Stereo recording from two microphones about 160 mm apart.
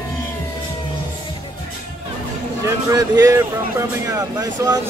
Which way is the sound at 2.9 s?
20° right (ahead or behind).